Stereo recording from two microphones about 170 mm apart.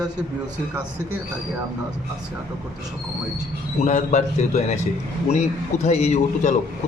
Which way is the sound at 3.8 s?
45° left (ahead or behind).